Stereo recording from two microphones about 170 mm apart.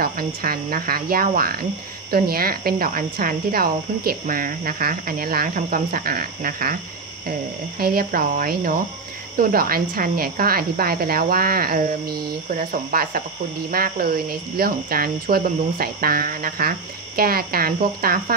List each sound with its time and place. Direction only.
0.0 s speech: 60° right (ahead or behind)
7.8 s speech: 60° right (ahead or behind)